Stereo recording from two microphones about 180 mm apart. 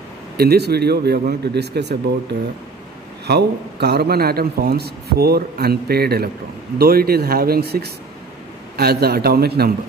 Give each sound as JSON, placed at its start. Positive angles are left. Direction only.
{"t": 0.4, "sound": "a man's voice", "side_deg": -65}